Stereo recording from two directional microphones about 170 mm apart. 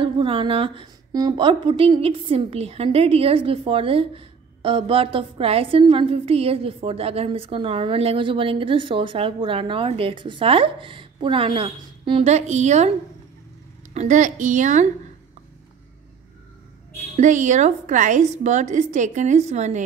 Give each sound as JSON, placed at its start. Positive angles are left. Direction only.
{"t": 0.0, "sound": "a woman's voice", "side_deg": -30}
{"t": 13.9, "sound": "a woman's voice", "side_deg": -45}
{"t": 17.2, "sound": "a woman's voice", "side_deg": -45}